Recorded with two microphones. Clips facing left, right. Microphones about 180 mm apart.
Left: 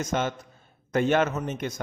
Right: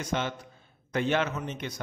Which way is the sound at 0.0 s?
45° left (ahead or behind).